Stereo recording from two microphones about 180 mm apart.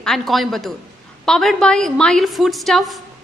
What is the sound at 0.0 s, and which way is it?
A woman's voice, centre (ahead or behind).